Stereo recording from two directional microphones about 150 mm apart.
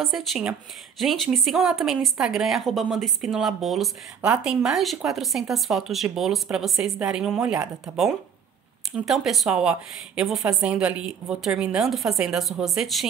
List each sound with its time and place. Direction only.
0.0 s a woman's voice: centre (ahead or behind)